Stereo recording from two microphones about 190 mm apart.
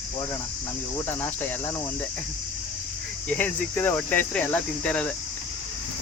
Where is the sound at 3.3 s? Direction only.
10° left (ahead or behind).